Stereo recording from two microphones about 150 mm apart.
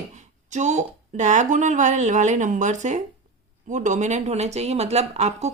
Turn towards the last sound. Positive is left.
turn(degrees=-50)  # may be behind; listen again after turning